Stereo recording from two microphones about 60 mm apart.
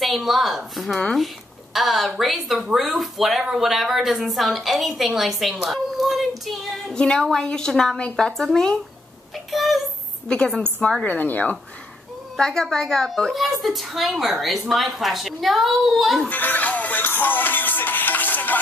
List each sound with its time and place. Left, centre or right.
0.0 s a woman's voice: centre
10.2 s a woman's voice: centre
11.1 s speech: left
12.4 s a woman's voice: centre
16.3 s music: left